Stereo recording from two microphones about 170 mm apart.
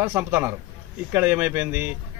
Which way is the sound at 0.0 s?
15° right (ahead or behind).